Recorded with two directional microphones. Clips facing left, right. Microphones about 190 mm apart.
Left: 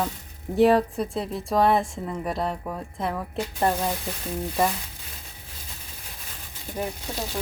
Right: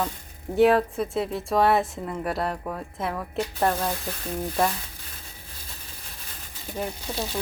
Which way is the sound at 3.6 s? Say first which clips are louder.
Left 1 dB; 15° left (ahead or behind).